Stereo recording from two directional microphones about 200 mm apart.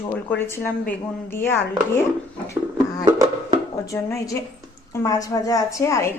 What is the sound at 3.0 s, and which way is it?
Music, 15° right (ahead or behind).